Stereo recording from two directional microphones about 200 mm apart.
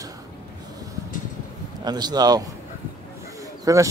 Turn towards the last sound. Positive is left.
turn(degrees=-15)  # may be behind; listen again after turning